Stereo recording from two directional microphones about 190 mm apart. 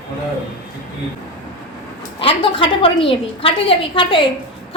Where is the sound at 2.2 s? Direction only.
30° left (ahead or behind).